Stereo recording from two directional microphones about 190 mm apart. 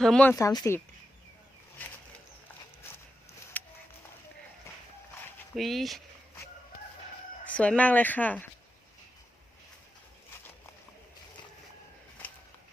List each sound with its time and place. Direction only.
0.0 s speech: 5° left (ahead or behind)
0.3 s speech: 15° left (ahead or behind)
1.8 s a sound: 10° left (ahead or behind)
3.6 s a sound: 10° left (ahead or behind)
5.5 s speech: centre (ahead or behind)
7.4 s speech: 5° left (ahead or behind)